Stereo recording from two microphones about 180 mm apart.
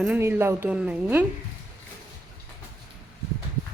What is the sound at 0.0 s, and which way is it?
A woman's voice, 10° right (ahead or behind).